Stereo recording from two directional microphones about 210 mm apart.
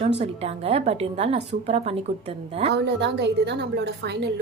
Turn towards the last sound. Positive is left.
turn(degrees=-55)  # may be behind; listen again after turning